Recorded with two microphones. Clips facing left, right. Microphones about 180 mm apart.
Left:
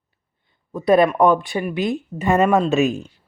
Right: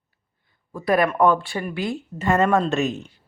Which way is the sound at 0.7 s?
25° left (ahead or behind).